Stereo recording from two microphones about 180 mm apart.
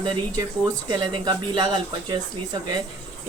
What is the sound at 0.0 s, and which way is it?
Speech, 20° right (ahead or behind).